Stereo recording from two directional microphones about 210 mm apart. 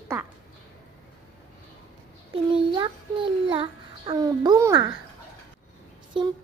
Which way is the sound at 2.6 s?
25° right (ahead or behind).